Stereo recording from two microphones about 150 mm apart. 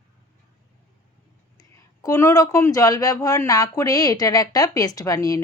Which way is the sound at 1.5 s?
20° left (ahead or behind).